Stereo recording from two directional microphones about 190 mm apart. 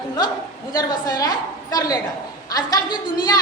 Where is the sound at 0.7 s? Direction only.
20° left (ahead or behind).